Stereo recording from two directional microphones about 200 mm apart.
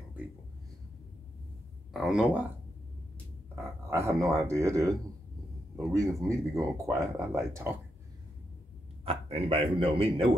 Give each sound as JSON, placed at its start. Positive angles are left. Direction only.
{"t": 2.0, "sound": "speech", "side_deg": 0}
{"t": 3.9, "sound": "speech", "side_deg": -15}
{"t": 9.0, "sound": "a man's voice", "side_deg": -30}